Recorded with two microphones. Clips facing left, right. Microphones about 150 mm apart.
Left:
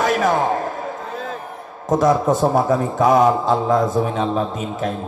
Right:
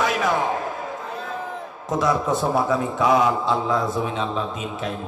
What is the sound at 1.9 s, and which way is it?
A man's voice, 45° left (ahead or behind).